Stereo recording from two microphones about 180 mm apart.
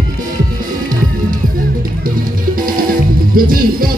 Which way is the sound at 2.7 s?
50° right (ahead or behind).